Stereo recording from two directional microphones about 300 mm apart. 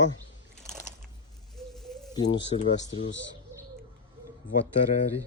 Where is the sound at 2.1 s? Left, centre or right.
Centre.